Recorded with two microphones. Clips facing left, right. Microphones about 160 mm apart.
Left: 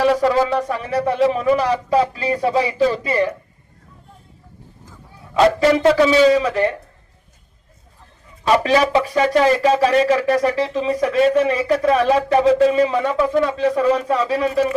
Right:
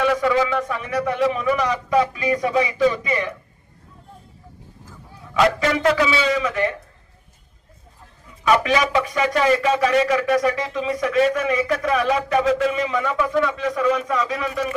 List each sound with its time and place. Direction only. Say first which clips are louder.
0.0 s speech: left 3 dB; 35° left (ahead or behind)
5.3 s speech: left 5 dB; 35° left (ahead or behind)
8.4 s speech: left 3 dB; 35° left (ahead or behind)